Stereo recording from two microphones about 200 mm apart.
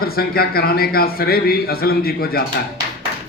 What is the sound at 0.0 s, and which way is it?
Speech, 50° left (ahead or behind).